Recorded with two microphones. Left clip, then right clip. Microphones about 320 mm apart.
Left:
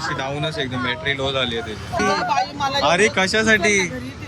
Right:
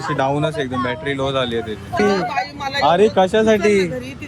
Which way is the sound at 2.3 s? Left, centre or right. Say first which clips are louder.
Left 2 dB; left.